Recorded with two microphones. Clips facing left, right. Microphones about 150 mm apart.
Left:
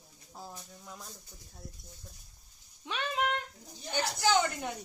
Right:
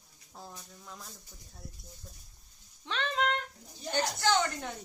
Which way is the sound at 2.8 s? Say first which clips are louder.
Right 1 dB; 10° left (ahead or behind).